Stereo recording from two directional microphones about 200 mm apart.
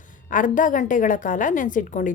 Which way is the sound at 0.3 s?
40° left (ahead or behind).